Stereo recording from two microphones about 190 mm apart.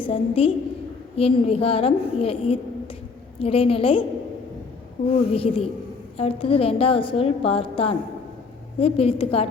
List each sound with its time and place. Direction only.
0.0 s a woman's voice: 30° left (ahead or behind)
5.1 s a woman's voice: 30° left (ahead or behind)